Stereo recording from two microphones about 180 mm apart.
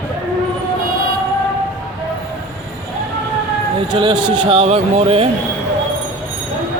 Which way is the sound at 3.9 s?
25° right (ahead or behind).